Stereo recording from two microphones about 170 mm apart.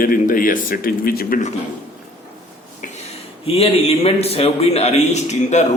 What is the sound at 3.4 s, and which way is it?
A man's voice, 35° left (ahead or behind).